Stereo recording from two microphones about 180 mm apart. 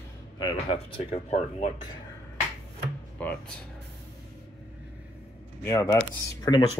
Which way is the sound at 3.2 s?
10° left (ahead or behind).